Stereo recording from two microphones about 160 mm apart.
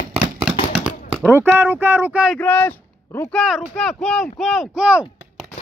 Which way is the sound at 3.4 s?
Centre (ahead or behind).